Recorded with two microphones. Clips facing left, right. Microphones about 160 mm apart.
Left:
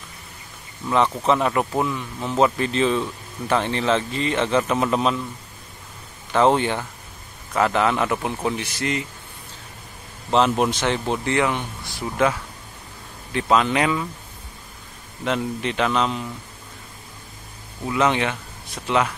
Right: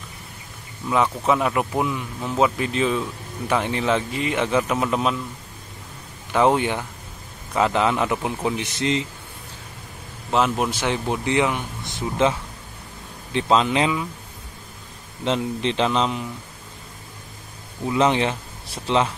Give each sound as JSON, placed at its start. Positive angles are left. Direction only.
{"t": 0.8, "sound": "speech", "side_deg": -5}
{"t": 6.3, "sound": "a man's voice", "side_deg": -10}
{"t": 10.3, "sound": "a man's voice", "side_deg": -5}
{"t": 15.2, "sound": "a man's voice", "side_deg": -25}
{"t": 17.9, "sound": "speech", "side_deg": -30}